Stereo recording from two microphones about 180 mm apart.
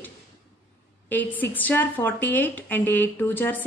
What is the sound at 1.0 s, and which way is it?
A woman's voice, 10° left (ahead or behind).